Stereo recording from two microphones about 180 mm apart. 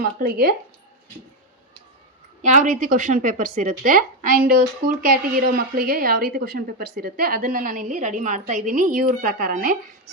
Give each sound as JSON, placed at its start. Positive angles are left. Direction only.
{"t": 0.0, "sound": "speech", "side_deg": -55}
{"t": 2.4, "sound": "a woman's voice", "side_deg": -45}